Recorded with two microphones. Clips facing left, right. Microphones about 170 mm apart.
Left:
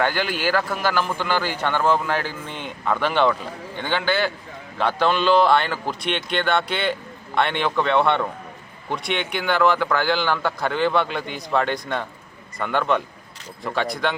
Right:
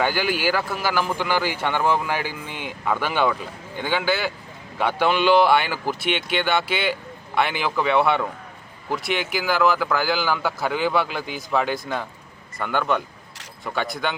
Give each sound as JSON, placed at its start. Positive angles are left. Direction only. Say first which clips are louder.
{"t": 0.0, "sound": "a man's voice", "louder": "even", "side_deg": -5}